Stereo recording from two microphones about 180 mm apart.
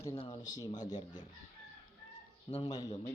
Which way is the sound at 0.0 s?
20° left (ahead or behind).